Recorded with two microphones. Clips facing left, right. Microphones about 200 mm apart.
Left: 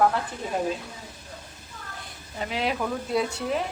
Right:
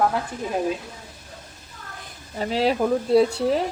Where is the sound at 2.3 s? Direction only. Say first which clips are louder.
Right 6 dB; 35° right (ahead or behind).